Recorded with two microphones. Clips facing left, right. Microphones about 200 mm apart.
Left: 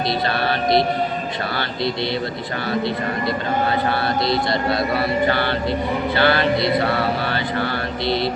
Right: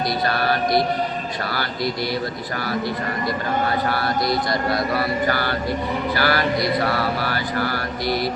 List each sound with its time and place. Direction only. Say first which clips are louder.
0.3 s mantra: left 1 dB; 25° left (ahead or behind)
4.3 s mantra: left 2 dB; 25° left (ahead or behind)